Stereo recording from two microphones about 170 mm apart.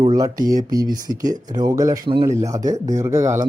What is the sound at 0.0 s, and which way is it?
Speech, 25° right (ahead or behind).